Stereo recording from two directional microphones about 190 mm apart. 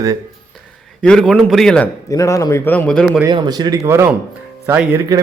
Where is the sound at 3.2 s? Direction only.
20° right (ahead or behind).